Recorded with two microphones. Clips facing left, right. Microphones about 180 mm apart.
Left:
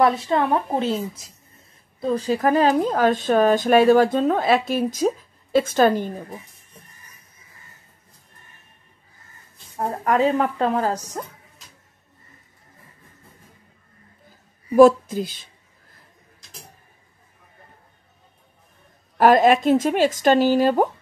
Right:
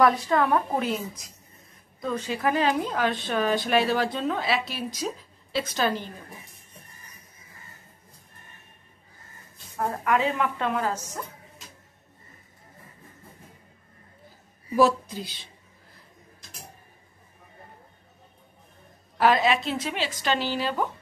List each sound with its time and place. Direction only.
0.0 s a woman's voice: 25° left (ahead or behind); by 6.2 s 50° left (ahead or behind)
9.8 s speech: 35° left (ahead or behind)
14.8 s a woman's voice: 50° left (ahead or behind)
19.1 s a woman's voice: 45° left (ahead or behind)